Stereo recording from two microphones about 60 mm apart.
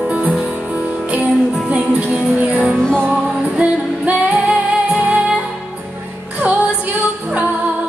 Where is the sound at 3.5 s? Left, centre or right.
Centre.